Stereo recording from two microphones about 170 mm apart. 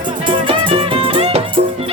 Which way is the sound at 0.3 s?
30° right (ahead or behind).